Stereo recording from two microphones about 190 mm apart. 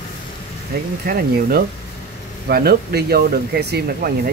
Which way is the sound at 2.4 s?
55° right (ahead or behind).